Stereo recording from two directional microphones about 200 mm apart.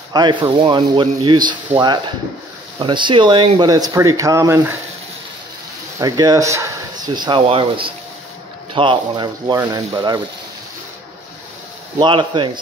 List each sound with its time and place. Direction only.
0.1 s speech: 20° right (ahead or behind)
5.9 s speech: 20° right (ahead or behind)
12.0 s speech: 25° right (ahead or behind)